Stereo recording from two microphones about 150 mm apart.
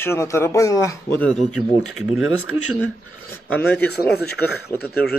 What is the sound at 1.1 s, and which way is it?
Speech, 5° left (ahead or behind).